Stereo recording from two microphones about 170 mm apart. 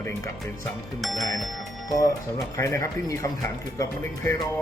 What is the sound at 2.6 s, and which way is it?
Speech, 15° left (ahead or behind).